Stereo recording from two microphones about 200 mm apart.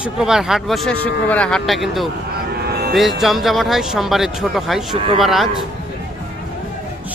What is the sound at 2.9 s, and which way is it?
Speech, centre (ahead or behind).